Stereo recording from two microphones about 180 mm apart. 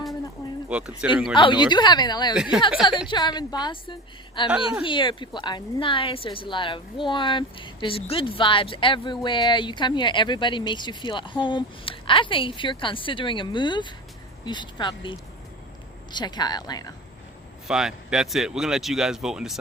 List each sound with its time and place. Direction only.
0.7 s speech: 5° right (ahead or behind)
1.4 s a woman's voice: 25° left (ahead or behind)
2.3 s speech: 5° right (ahead or behind)
3.1 s a woman's voice: 25° left (ahead or behind)
4.4 s speech: 5° right (ahead or behind)
4.8 s a woman's voice: 25° left (ahead or behind)
16.1 s a woman's voice: 25° left (ahead or behind)
17.7 s speech: 5° right (ahead or behind)